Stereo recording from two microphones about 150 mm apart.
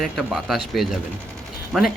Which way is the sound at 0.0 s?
Centre (ahead or behind).